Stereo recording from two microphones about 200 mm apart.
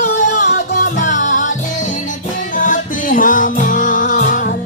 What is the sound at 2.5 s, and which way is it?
Music, 40° left (ahead or behind).